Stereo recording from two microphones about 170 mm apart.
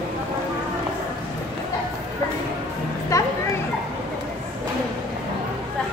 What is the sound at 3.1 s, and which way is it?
Children playing, 15° left (ahead or behind).